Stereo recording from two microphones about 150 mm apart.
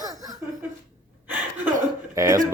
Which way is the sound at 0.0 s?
25° right (ahead or behind).